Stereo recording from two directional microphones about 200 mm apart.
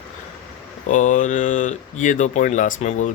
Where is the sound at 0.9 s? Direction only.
40° left (ahead or behind).